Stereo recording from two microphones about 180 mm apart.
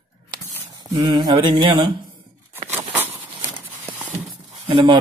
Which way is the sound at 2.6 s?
10° right (ahead or behind).